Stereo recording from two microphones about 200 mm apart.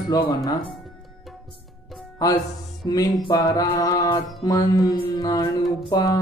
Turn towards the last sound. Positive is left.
turn(degrees=20)  # may be behind; listen again after turning